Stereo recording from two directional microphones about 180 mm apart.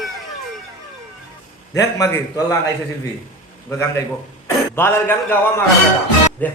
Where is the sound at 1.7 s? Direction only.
15° left (ahead or behind).